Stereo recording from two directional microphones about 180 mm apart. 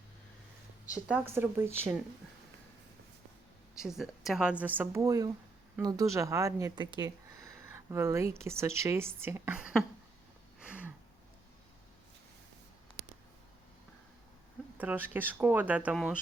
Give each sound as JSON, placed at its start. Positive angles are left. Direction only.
{"t": 0.9, "sound": "speech", "side_deg": -5}
{"t": 3.8, "sound": "speech", "side_deg": 0}
{"t": 10.6, "sound": "a sound", "side_deg": -5}
{"t": 14.8, "sound": "speech", "side_deg": -10}